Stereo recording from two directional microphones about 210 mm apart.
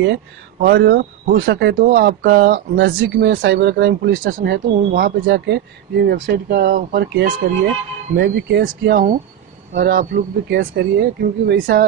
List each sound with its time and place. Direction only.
0.0 s speech: 50° right (ahead or behind)